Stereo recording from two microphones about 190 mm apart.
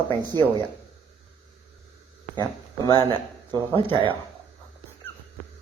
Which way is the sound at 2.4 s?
20° right (ahead or behind).